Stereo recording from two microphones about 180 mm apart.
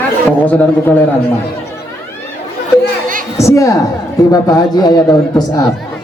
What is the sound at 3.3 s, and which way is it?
A woman's voice, 15° left (ahead or behind).